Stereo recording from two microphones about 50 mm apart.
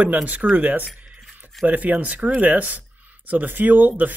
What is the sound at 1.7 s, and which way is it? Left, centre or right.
Speech, right.